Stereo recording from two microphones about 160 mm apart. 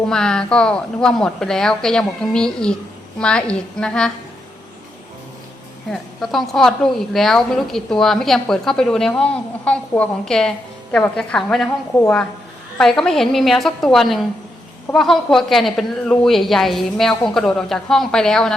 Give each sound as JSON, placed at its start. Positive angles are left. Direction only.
{"t": 0.0, "sound": "a woman's voice", "side_deg": 5}
{"t": 5.9, "sound": "a woman's voice", "side_deg": 0}